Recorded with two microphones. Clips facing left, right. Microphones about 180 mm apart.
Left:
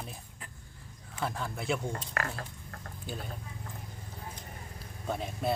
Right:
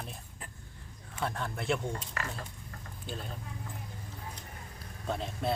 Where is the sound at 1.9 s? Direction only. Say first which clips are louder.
Left 2 dB; 60° left (ahead or behind).